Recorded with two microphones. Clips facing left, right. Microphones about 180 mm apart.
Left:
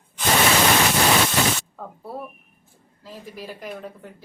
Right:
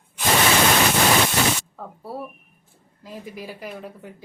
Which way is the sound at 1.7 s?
5° right (ahead or behind).